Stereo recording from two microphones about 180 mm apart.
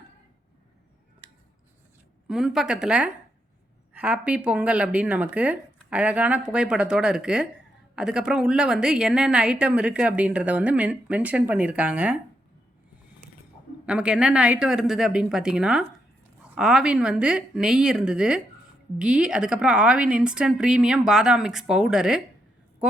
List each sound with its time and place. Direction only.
2.2 s a woman's voice: centre (ahead or behind)
13.8 s a woman's voice: 5° right (ahead or behind)